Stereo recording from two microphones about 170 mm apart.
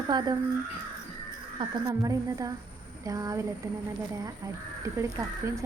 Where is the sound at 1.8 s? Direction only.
20° right (ahead or behind).